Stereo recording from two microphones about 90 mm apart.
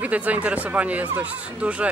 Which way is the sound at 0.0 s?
15° right (ahead or behind).